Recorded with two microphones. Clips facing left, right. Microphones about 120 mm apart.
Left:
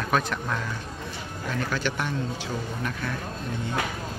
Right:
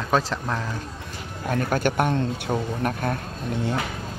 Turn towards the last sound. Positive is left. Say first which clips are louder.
# right 6 dB
turn(degrees=-55)  # may be behind; listen again after turning